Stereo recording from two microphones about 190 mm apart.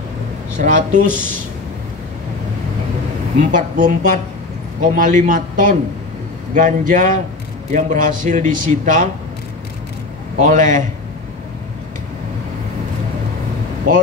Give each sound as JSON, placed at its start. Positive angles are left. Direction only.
{"t": 0.6, "sound": "a man's voice", "side_deg": -45}
{"t": 3.3, "sound": "a man's voice", "side_deg": -45}
{"t": 10.4, "sound": "a man's voice", "side_deg": -45}